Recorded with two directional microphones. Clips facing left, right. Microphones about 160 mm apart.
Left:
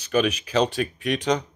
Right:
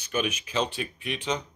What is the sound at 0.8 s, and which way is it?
Speech, 45° left (ahead or behind).